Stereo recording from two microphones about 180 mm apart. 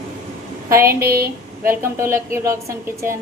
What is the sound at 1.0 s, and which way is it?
Speech, 60° right (ahead or behind).